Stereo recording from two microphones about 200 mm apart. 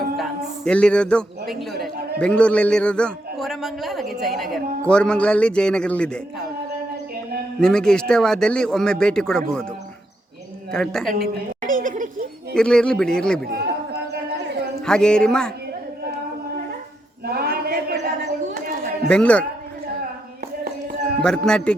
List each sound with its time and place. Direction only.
0.2 s a man's voice: 5° left (ahead or behind)
7.6 s a man's voice: 5° left (ahead or behind)
10.7 s a man's voice: 5° left (ahead or behind)
11.6 s a sound: 40° right (ahead or behind)
12.5 s a man's voice: 5° left (ahead or behind)
13.4 s chatter: 50° right (ahead or behind)
14.8 s a man's voice: 5° left (ahead or behind)
17.2 s a sound: 50° right (ahead or behind)
19.0 s a man's voice: 5° left (ahead or behind)
21.2 s a man's voice: 5° left (ahead or behind)